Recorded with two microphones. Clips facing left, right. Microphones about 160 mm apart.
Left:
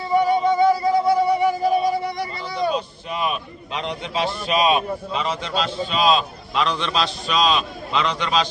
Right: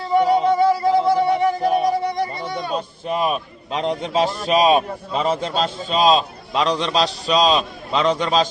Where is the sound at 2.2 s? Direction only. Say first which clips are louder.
Left 1 dB; 50° right (ahead or behind).